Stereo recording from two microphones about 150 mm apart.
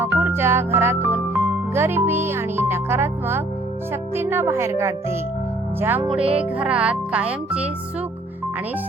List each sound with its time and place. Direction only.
0.0 s music: 15° right (ahead or behind)
1.4 s speech: 15° right (ahead or behind)
6.0 s speech: centre (ahead or behind)